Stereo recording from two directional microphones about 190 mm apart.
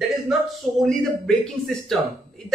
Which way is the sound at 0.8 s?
5° left (ahead or behind).